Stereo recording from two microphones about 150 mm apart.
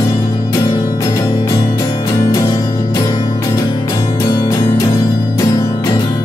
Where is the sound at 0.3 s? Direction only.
25° left (ahead or behind).